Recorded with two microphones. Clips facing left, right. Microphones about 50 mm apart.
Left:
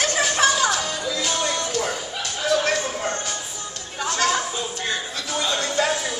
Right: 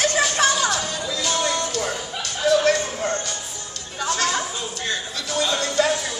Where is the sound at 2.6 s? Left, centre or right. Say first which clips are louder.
Right 3 dB; centre.